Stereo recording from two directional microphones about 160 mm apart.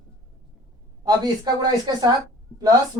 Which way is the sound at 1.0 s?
25° right (ahead or behind).